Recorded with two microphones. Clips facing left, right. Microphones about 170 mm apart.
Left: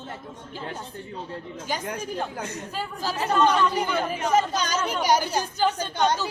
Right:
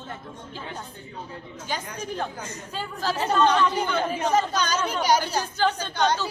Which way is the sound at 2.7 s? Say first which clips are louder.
Right 4 dB; 5° left (ahead or behind).